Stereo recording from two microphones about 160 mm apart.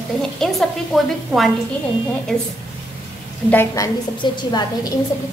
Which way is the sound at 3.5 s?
15° left (ahead or behind).